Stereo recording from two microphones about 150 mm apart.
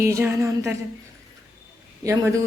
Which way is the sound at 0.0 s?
20° right (ahead or behind).